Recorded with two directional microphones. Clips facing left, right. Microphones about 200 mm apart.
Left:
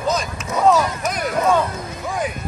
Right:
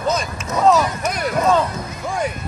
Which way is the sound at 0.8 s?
Centre (ahead or behind).